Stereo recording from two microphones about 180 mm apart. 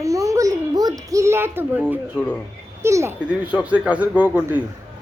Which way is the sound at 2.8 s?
15° right (ahead or behind).